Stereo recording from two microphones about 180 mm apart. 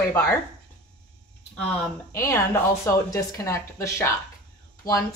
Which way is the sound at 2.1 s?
15° left (ahead or behind).